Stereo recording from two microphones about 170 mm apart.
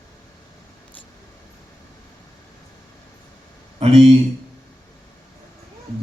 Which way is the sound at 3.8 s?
35° right (ahead or behind).